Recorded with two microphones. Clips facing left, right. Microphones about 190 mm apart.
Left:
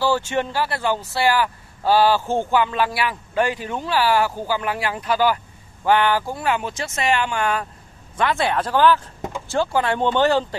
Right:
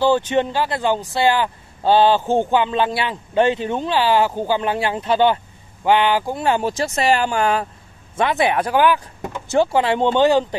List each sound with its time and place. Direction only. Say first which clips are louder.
0.0 s speech: right 4 dB; 20° right (ahead or behind)
6.4 s speech: right 4 dB; 35° right (ahead or behind)
8.2 s speech: right 3 dB; 20° right (ahead or behind)